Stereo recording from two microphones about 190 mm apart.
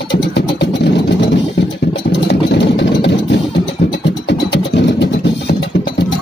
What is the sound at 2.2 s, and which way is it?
Vehicle, 65° left (ahead or behind).